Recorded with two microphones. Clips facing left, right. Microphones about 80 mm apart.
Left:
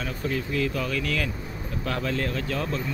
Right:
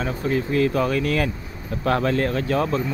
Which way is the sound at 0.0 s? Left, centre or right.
Right.